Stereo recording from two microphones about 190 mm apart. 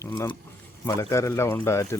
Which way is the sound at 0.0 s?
15° left (ahead or behind).